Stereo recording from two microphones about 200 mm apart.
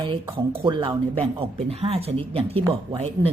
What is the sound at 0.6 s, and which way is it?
A woman's voice, 25° right (ahead or behind).